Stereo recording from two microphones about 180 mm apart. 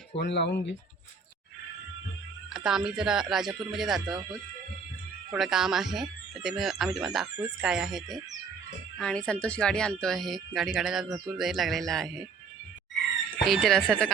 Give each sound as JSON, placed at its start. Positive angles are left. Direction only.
{"t": 0.2, "sound": "speech", "side_deg": 75}
{"t": 2.5, "sound": "speech", "side_deg": -5}
{"t": 5.3, "sound": "speech", "side_deg": -5}
{"t": 13.5, "sound": "speech", "side_deg": 0}